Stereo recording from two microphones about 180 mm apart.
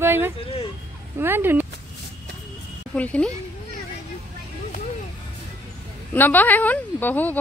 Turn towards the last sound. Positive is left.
turn(degrees=10)  # may be behind; listen again after turning